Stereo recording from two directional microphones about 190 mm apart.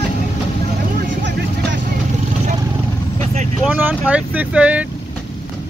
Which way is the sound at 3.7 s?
10° right (ahead or behind).